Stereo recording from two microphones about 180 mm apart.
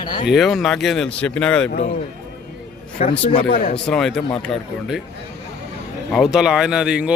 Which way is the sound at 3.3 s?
30° left (ahead or behind).